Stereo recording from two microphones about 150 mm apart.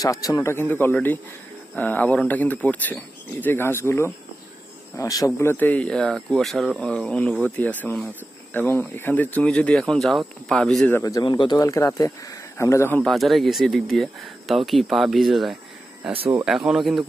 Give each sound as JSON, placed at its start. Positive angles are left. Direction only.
{"t": 0.0, "sound": "speech", "side_deg": 25}
{"t": 11.0, "sound": "speech", "side_deg": 25}
{"t": 13.0, "sound": "speech", "side_deg": 0}